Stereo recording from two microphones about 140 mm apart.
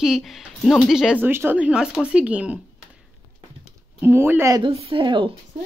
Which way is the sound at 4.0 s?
15° right (ahead or behind).